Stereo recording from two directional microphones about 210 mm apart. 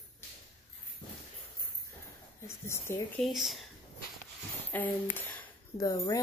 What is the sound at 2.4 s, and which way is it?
Speech, 10° left (ahead or behind).